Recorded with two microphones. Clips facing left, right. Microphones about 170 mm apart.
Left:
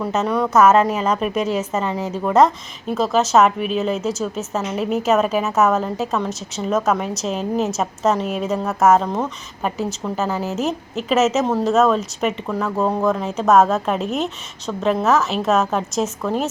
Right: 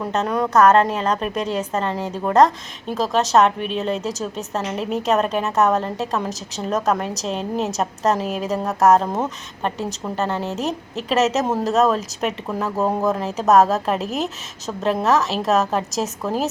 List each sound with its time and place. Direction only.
0.0 s a woman's voice: 5° left (ahead or behind)
10.2 s a woman's voice: 5° left (ahead or behind)